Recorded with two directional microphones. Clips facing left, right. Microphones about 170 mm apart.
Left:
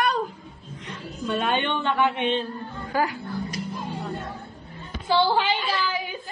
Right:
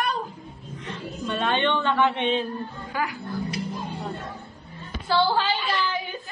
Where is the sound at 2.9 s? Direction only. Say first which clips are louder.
Left 4 dB; 45° left (ahead or behind).